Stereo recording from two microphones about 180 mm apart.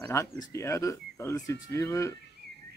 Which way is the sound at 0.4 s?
15° left (ahead or behind).